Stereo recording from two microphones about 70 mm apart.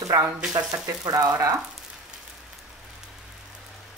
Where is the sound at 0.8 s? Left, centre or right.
Right.